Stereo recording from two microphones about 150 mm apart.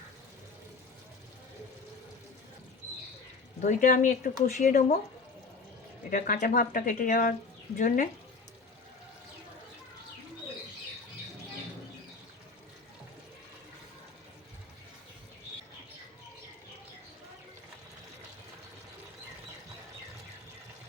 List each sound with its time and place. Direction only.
3.6 s speech: 55° left (ahead or behind)
6.1 s speech: 65° left (ahead or behind)